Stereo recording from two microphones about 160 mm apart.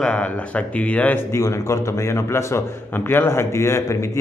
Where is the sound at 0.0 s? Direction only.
5° left (ahead or behind).